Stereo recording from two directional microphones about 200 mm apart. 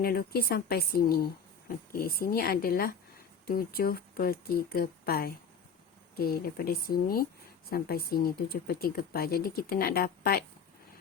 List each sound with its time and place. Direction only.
0.0 s a woman's voice: 50° left (ahead or behind)